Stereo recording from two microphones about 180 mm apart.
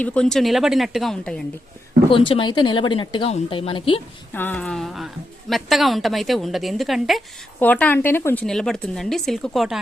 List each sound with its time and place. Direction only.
0.0 s a woman's voice: 5° left (ahead or behind)
2.0 s speech: 30° left (ahead or behind)
4.3 s a woman's voice: 10° left (ahead or behind)